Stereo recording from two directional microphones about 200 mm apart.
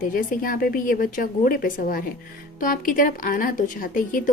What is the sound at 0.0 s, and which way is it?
A woman's voice, 45° left (ahead or behind).